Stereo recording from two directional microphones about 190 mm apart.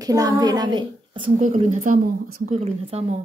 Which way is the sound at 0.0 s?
20° right (ahead or behind).